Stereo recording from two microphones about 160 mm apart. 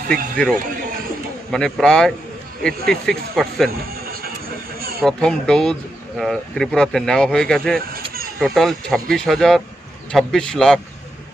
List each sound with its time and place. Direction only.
0.0 s speech: 60° right (ahead or behind)
1.5 s speech: 5° left (ahead or behind)
3.8 s a sound: 70° right (ahead or behind)
5.0 s speech: 5° left (ahead or behind)
7.9 s a sound: 70° right (ahead or behind)
8.4 s speech: centre (ahead or behind)